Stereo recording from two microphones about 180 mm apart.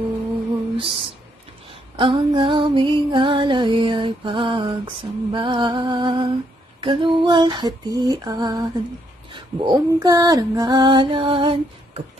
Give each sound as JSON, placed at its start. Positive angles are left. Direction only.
{"t": 0.7, "sound": "speech", "side_deg": -30}
{"t": 2.0, "sound": "music", "side_deg": -25}